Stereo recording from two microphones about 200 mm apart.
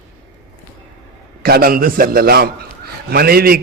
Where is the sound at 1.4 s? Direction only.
50° right (ahead or behind).